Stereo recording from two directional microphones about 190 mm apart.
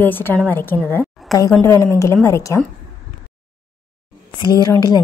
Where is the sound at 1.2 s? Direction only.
Centre (ahead or behind).